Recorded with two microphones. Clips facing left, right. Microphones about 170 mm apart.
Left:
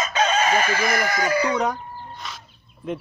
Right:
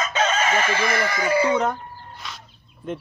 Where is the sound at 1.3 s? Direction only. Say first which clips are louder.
Right 4 dB; 25° right (ahead or behind).